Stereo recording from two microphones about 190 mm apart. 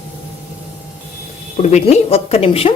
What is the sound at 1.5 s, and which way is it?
A woman's voice, 35° left (ahead or behind).